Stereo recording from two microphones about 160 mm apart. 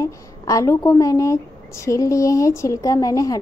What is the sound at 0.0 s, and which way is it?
A woman's voice, 20° left (ahead or behind).